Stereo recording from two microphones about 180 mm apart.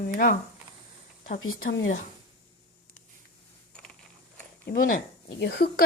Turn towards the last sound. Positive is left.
turn(degrees=65)  # may be behind; listen again after turning